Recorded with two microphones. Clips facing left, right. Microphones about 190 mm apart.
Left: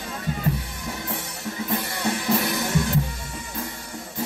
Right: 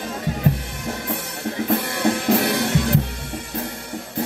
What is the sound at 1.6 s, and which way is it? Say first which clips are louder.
Music: right 6 dB; 60° right (ahead or behind).